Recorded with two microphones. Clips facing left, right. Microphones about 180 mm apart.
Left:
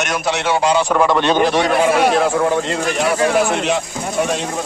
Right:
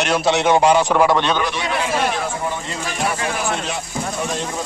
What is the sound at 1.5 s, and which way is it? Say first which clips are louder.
A man's voice: left 8 dB; 60° left (ahead or behind).